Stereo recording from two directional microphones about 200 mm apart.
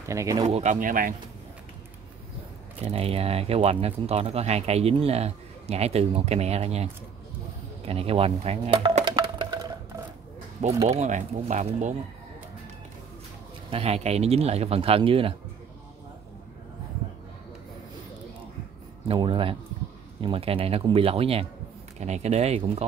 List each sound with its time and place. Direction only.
0.1 s speech: 15° right (ahead or behind)
0.5 s speech: 35° right (ahead or behind)
2.8 s speech: 30° right (ahead or behind)
7.8 s percussion: 30° right (ahead or behind)
10.9 s speech: 35° right (ahead or behind)
13.7 s speech: 30° right (ahead or behind)
19.0 s speech: 25° right (ahead or behind)